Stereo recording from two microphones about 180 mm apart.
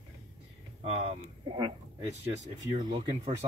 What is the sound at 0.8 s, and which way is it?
Speech, 30° right (ahead or behind).